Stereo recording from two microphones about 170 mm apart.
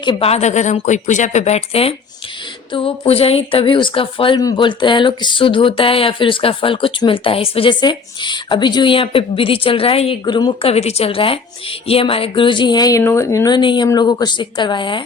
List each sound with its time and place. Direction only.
0.0 s a woman's voice: 30° left (ahead or behind)